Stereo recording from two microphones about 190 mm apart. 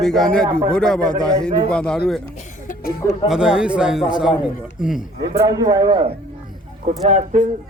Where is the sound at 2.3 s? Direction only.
40° left (ahead or behind).